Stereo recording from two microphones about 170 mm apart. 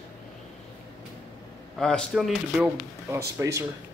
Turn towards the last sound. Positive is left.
turn(degrees=-15)  # may be behind; listen again after turning